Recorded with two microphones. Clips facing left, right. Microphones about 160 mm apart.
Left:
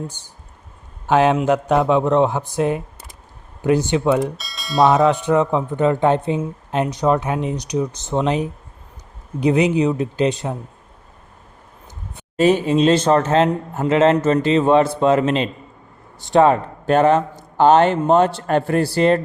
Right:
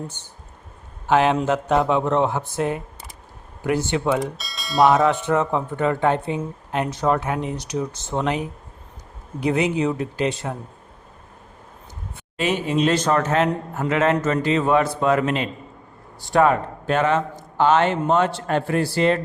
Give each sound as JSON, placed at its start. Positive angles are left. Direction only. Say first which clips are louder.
{"t": 1.0, "sound": "speech", "louder": "left 3 dB", "side_deg": 15}
{"t": 4.1, "sound": "speech", "louder": "left 4 dB", "side_deg": 0}
{"t": 5.0, "sound": "speech", "louder": "left 4 dB", "side_deg": 15}
{"t": 12.4, "sound": "speech", "louder": "left 6 dB", "side_deg": 35}
{"t": 16.8, "sound": "speech", "louder": "left 6 dB", "side_deg": 40}